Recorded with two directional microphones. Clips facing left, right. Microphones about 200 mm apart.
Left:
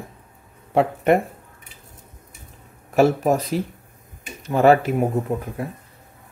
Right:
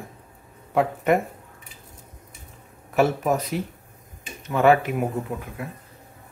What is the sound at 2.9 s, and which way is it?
Speech, 35° left (ahead or behind).